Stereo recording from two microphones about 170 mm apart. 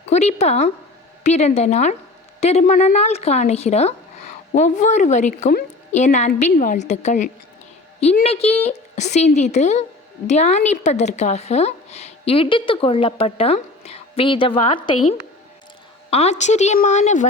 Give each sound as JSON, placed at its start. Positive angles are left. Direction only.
{"t": 0.1, "sound": "a woman's voice", "side_deg": 40}
{"t": 16.0, "sound": "a woman's voice", "side_deg": 35}